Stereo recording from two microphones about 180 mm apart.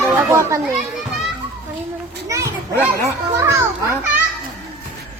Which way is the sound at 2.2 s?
15° right (ahead or behind).